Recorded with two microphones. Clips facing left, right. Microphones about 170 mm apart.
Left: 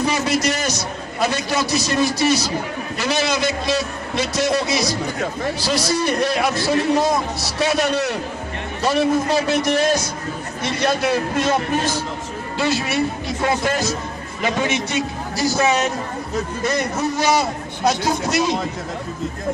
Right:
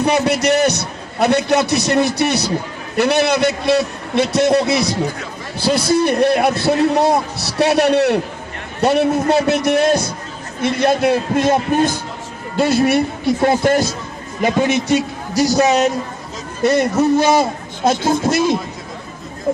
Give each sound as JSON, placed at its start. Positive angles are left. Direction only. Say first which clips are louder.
{"t": 0.0, "sound": "a man's voice", "louder": "right 4 dB", "side_deg": -65}